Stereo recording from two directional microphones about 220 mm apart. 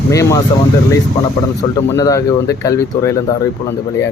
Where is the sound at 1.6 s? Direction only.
15° left (ahead or behind).